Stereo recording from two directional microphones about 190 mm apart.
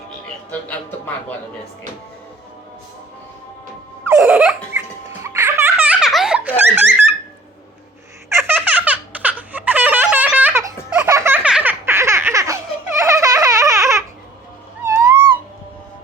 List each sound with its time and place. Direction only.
0.7 s a man's voice: 10° left (ahead or behind)
4.0 s baby laughter: 5° right (ahead or behind)
8.3 s baby laughter: 10° right (ahead or behind)
14.8 s cat: 15° right (ahead or behind)